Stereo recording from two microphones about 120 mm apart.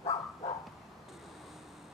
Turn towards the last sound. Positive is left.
turn(degrees=55)  # may be behind; listen again after turning